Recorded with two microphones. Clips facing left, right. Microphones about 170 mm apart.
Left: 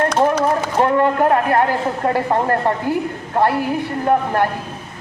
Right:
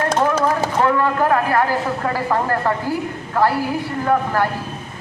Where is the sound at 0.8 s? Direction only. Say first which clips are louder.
Left 3 dB; 30° left (ahead or behind).